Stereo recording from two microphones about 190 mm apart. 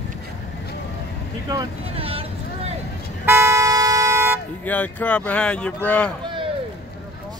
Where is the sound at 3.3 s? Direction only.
15° right (ahead or behind).